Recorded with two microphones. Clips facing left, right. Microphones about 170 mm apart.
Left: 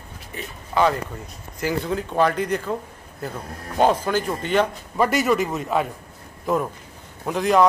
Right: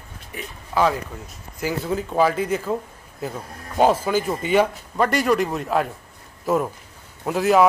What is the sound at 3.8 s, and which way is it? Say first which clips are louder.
Speech: right 1 dB; 5° right (ahead or behind).